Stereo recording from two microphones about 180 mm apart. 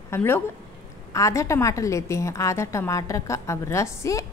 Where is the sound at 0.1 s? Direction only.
15° left (ahead or behind).